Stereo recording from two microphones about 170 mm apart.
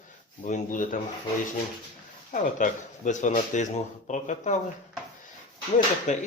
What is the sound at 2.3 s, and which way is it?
Speech, 50° left (ahead or behind).